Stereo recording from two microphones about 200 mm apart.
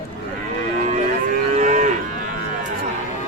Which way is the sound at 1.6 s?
40° right (ahead or behind).